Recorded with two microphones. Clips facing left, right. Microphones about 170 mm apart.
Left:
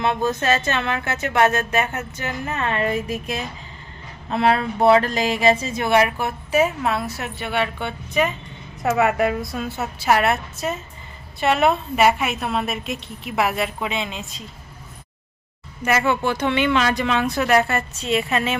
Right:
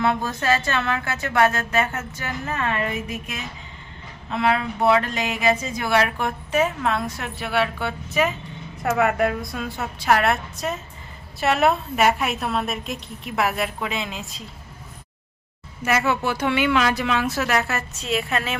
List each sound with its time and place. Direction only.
0.0 s speech: 20° left (ahead or behind)
2.9 s a woman's voice: 35° left (ahead or behind)
6.1 s a woman's voice: 5° left (ahead or behind)
15.8 s a woman's voice: 5° right (ahead or behind)